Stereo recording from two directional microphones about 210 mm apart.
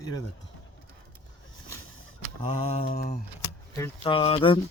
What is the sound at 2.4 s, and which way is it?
Mantra, 30° left (ahead or behind).